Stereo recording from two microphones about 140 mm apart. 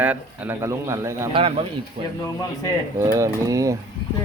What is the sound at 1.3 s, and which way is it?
Speech, 40° right (ahead or behind).